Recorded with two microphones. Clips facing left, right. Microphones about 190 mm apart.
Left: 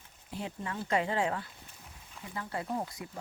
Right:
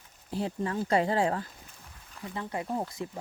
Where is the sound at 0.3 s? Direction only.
35° right (ahead or behind).